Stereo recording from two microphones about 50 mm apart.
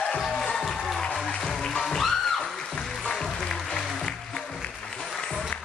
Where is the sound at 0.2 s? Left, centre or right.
Centre.